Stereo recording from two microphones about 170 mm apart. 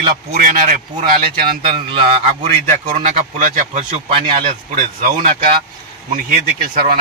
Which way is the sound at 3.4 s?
50° right (ahead or behind).